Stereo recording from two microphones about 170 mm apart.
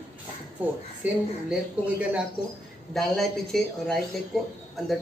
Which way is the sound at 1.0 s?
10° right (ahead or behind).